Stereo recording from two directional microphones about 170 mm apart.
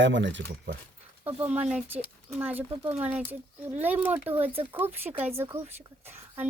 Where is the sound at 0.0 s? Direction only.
90° right.